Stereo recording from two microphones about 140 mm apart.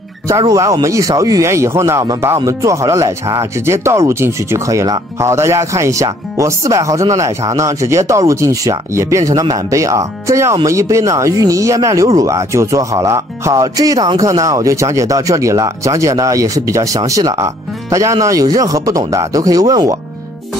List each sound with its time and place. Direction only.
0.5 s speech: 25° right (ahead or behind)